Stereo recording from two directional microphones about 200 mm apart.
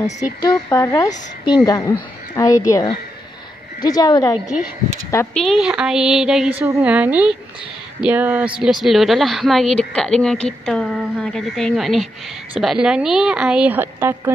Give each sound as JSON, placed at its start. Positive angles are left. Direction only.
{"t": 0.0, "sound": "a woman's voice", "side_deg": 20}
{"t": 5.1, "sound": "a woman's voice", "side_deg": 5}